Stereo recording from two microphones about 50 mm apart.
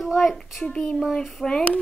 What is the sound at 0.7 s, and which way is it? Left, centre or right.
Speech, left.